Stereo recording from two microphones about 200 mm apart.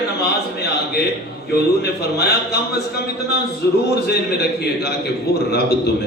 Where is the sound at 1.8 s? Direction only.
55° left (ahead or behind).